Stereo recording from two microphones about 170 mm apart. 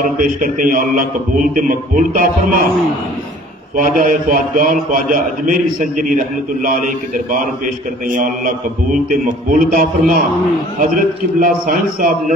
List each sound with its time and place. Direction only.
0.0 s mantra: 50° right (ahead or behind)
3.7 s mantra: 50° right (ahead or behind)
11.3 s mantra: 55° right (ahead or behind)